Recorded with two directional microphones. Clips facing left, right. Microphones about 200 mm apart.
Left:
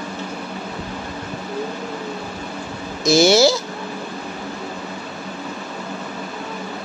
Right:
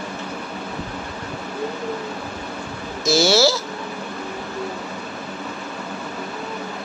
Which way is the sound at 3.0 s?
15° left (ahead or behind).